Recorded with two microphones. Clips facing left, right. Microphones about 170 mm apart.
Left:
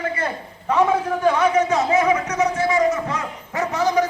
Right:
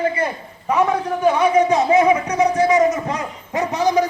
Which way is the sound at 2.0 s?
30° right (ahead or behind).